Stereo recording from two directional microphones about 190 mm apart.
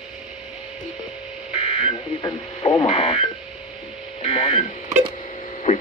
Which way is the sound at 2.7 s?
35° left (ahead or behind).